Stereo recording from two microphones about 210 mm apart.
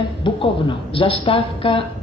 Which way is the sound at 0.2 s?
25° left (ahead or behind).